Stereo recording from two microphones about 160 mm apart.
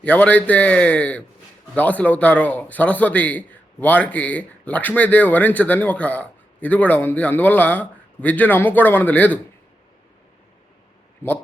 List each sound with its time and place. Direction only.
0.0 s a man's voice: 10° left (ahead or behind)